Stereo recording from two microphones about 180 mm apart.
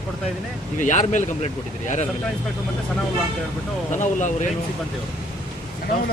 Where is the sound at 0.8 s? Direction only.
40° left (ahead or behind).